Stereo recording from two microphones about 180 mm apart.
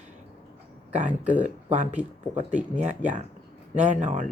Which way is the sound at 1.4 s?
45° right (ahead or behind).